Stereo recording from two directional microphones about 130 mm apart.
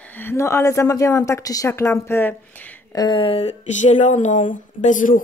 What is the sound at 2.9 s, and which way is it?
Speech, 35° left (ahead or behind).